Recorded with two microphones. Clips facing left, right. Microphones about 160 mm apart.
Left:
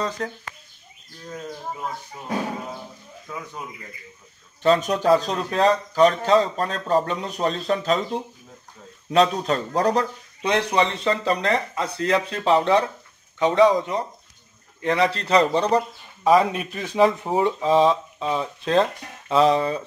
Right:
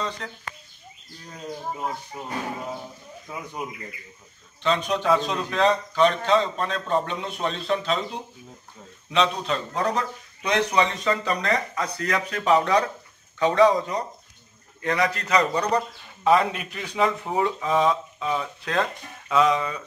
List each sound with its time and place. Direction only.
0.2 s speech: 40° left (ahead or behind)
3.3 s speech: 15° right (ahead or behind)
4.6 s a man's voice: 45° left (ahead or behind)